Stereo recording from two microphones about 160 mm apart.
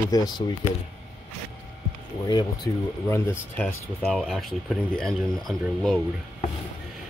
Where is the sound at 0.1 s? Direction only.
20° left (ahead or behind).